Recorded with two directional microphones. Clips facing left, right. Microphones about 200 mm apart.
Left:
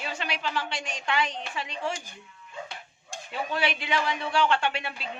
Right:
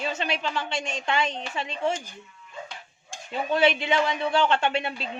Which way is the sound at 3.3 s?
25° right (ahead or behind).